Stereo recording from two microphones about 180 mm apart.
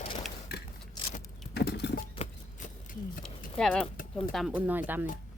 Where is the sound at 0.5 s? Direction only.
60° left (ahead or behind).